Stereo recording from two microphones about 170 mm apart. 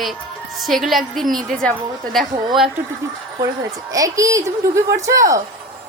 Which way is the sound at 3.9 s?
20° right (ahead or behind).